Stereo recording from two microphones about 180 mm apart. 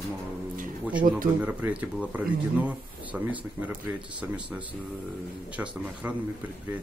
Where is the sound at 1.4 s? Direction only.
10° right (ahead or behind).